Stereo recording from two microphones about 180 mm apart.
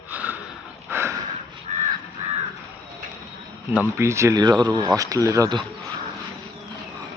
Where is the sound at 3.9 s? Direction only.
15° right (ahead or behind).